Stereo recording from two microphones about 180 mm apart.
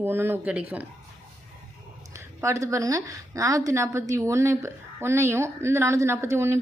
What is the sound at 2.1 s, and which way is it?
Speech, 15° right (ahead or behind).